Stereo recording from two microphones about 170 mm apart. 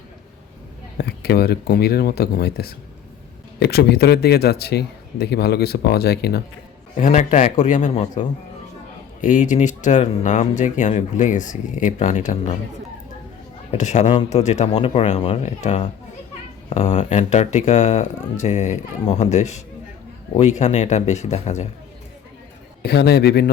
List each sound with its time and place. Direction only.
0.9 s a man's voice: 70° left (ahead or behind)
6.9 s speech: 45° left (ahead or behind)
9.2 s speech: 45° left (ahead or behind)
13.7 s speech: 45° left (ahead or behind)
22.8 s a man's voice: 70° left (ahead or behind)